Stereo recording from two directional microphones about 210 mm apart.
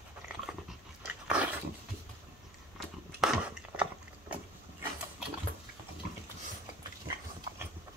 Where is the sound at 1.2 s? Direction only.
5° right (ahead or behind).